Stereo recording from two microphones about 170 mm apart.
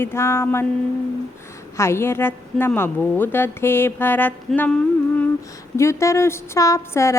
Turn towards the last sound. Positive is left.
turn(degrees=15)  # may be behind; listen again after turning